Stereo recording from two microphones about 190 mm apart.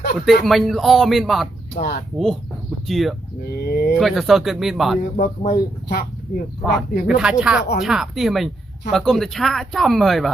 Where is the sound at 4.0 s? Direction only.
Centre (ahead or behind).